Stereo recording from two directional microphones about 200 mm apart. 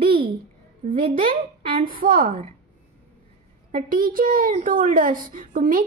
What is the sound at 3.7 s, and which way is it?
A woman's voice, 45° right (ahead or behind).